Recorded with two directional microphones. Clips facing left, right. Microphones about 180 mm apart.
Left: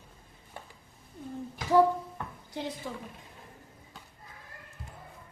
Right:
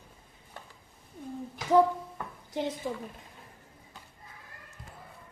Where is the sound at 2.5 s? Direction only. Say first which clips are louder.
Right 5 dB; 20° right (ahead or behind).